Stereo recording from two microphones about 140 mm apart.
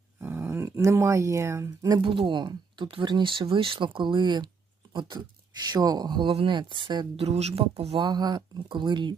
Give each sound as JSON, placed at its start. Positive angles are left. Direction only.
{"t": 0.2, "sound": "speech", "side_deg": -15}
{"t": 7.2, "sound": "speech", "side_deg": -50}
{"t": 7.9, "sound": "speech", "side_deg": -30}